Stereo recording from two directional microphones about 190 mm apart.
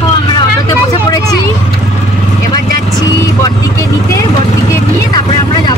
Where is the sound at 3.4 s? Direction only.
15° left (ahead or behind).